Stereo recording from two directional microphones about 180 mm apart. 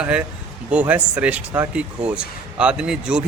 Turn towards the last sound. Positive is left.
turn(degrees=-5)  # may be behind; listen again after turning